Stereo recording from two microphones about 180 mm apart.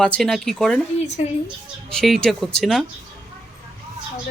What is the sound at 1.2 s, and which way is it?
Speech, 35° left (ahead or behind).